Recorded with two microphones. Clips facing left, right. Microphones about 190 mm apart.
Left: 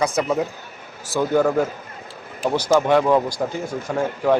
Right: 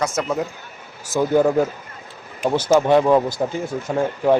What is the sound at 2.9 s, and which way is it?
Speech, 15° right (ahead or behind).